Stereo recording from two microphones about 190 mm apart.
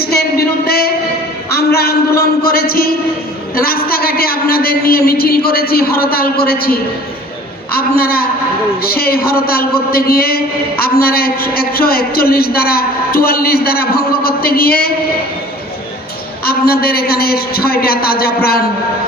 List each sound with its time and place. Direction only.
0.0 s a sound: 55° left (ahead or behind)
1.5 s a man's voice: 55° left (ahead or behind)
16.5 s a man's voice: 55° left (ahead or behind)